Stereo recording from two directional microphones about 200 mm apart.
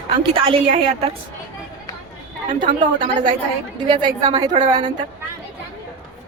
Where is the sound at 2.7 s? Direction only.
40° right (ahead or behind).